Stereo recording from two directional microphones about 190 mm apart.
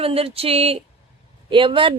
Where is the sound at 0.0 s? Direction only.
30° right (ahead or behind).